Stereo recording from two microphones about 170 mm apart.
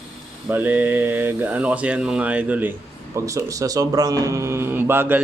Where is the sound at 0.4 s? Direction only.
10° right (ahead or behind).